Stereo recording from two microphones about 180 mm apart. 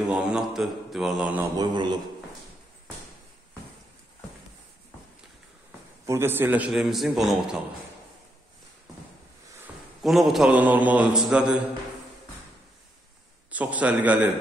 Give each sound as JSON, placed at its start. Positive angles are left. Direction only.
{"t": 0.1, "sound": "a man's voice", "side_deg": -5}
{"t": 1.6, "sound": "speech", "side_deg": -25}
{"t": 6.0, "sound": "a man's voice", "side_deg": -15}
{"t": 10.0, "sound": "a man's voice", "side_deg": 0}
{"t": 13.5, "sound": "a man's voice", "side_deg": -10}